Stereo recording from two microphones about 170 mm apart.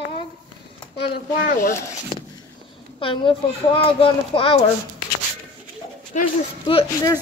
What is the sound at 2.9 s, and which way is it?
A child's voice, 30° left (ahead or behind).